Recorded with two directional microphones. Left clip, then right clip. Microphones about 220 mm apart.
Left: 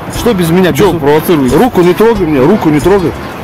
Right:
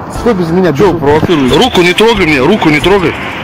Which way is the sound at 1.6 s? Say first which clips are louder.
Right 1 dB; 15° right (ahead or behind).